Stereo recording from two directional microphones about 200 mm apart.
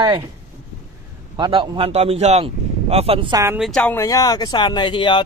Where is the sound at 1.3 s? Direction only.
25° right (ahead or behind).